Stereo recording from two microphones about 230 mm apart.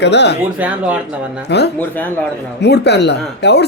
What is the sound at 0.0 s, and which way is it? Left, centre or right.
Speech, left.